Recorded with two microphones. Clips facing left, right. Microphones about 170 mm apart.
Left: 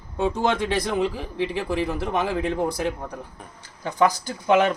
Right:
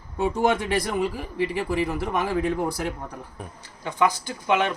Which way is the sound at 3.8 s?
40° left (ahead or behind).